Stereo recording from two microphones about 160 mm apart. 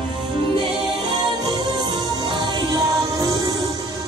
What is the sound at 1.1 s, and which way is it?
Music, 25° right (ahead or behind).